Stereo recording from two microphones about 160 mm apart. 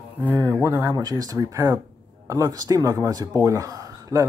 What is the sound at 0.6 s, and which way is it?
Speech, 15° right (ahead or behind).